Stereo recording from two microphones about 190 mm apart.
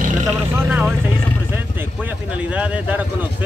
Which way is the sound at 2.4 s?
5° right (ahead or behind).